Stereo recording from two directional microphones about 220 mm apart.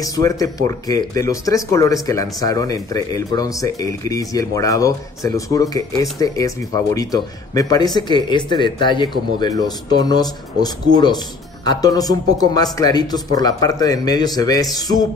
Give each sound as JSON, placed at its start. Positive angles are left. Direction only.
{"t": 0.0, "sound": "speech", "side_deg": 15}